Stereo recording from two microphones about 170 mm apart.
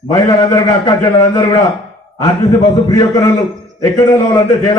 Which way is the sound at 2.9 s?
20° left (ahead or behind).